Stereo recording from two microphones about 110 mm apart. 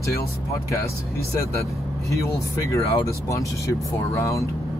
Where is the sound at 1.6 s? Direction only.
30° left (ahead or behind).